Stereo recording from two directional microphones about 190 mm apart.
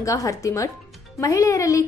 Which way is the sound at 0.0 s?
15° left (ahead or behind).